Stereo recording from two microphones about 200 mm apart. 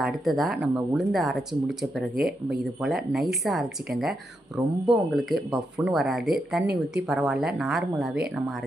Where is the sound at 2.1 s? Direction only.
50° right (ahead or behind).